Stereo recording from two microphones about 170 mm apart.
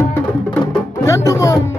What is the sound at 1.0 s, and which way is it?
Music, 15° left (ahead or behind).